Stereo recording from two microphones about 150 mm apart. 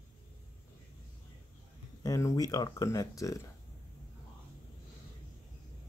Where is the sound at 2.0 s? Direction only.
20° left (ahead or behind).